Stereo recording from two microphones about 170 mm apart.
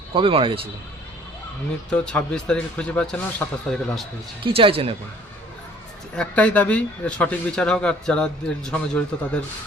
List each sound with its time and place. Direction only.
0.1 s speech: 30° right (ahead or behind)
1.9 s speech: 5° left (ahead or behind)
4.4 s speech: 30° right (ahead or behind)
6.1 s speech: 10° left (ahead or behind)